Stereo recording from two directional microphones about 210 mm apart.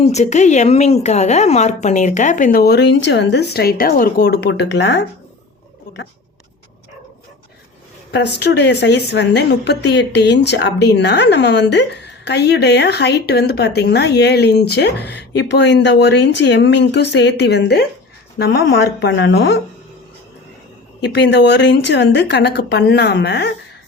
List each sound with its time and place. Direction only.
0.0 s a woman's voice: 30° left (ahead or behind); by 5.0 s 55° left (ahead or behind)
8.1 s a woman's voice: 55° left (ahead or behind)
21.0 s a woman's voice: 55° left (ahead or behind)